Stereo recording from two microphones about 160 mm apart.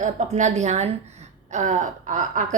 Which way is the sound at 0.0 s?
50° right (ahead or behind).